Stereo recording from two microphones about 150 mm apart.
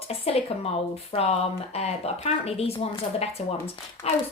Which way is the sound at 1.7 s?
45° left (ahead or behind).